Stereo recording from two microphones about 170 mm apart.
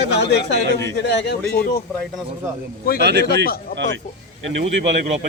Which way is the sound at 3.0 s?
80° right.